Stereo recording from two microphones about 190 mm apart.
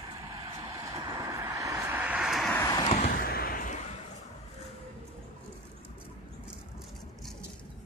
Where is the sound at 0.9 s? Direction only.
20° right (ahead or behind); by 2.5 s centre (ahead or behind).